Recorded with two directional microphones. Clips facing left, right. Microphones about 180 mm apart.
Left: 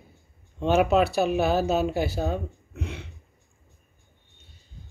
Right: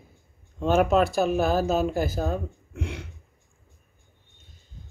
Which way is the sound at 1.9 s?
45° right (ahead or behind).